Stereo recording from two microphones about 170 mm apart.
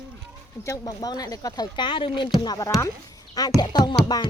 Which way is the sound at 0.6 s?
20° left (ahead or behind).